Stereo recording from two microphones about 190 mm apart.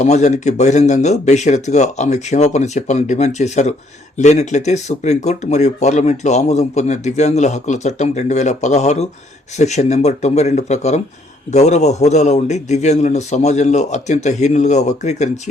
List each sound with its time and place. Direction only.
0.0 s speech: 35° left (ahead or behind)